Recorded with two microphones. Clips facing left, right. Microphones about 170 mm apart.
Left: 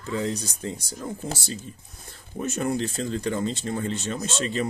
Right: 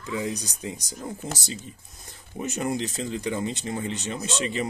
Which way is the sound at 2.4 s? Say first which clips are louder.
Left 2 dB; 15° right (ahead or behind).